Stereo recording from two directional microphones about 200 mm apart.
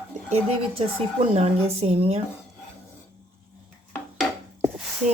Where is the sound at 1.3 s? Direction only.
30° right (ahead or behind).